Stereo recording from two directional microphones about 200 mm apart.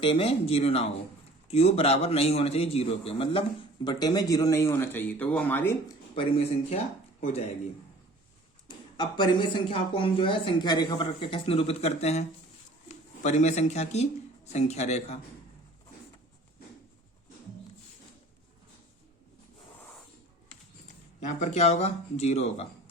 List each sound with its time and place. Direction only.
0.0 s a man's voice: 25° left (ahead or behind); by 5.7 s 10° left (ahead or behind)
6.1 s speech: 30° left (ahead or behind)
8.6 s speech: 20° left (ahead or behind)
21.2 s a man's voice: 35° left (ahead or behind)